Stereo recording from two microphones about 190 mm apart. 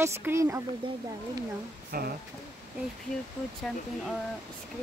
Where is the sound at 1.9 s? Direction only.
50° right (ahead or behind).